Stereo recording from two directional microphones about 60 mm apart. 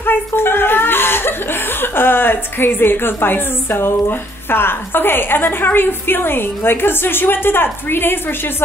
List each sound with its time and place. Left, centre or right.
0.0 s speech: left